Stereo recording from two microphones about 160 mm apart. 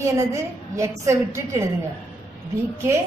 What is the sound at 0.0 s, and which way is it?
A woman's voice, 20° right (ahead or behind).